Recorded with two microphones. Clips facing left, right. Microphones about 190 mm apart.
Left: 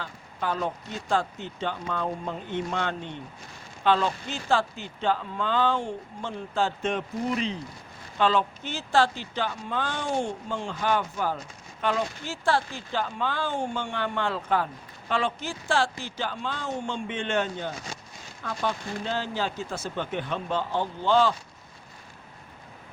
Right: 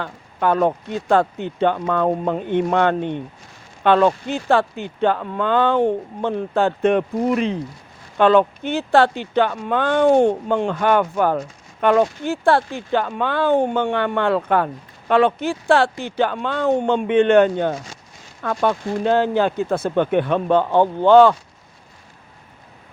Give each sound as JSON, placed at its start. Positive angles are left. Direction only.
{"t": 0.0, "sound": "speech", "side_deg": -60}